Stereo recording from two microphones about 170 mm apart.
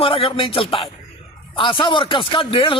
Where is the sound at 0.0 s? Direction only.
35° left (ahead or behind).